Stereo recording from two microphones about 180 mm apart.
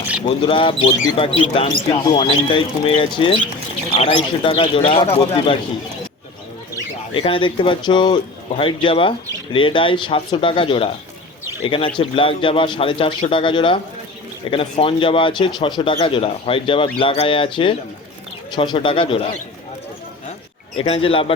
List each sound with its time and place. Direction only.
0.3 s speech: 30° left (ahead or behind)
7.1 s speech: 30° left (ahead or behind)
20.7 s speech: 30° left (ahead or behind)